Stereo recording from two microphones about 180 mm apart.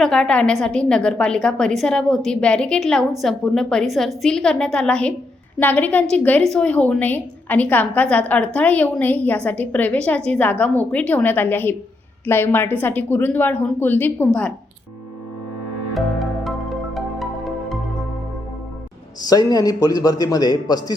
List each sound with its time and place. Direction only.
0.0 s a woman's voice: 5° left (ahead or behind)
16.0 s music: centre (ahead or behind)
19.2 s a man's voice: 20° left (ahead or behind)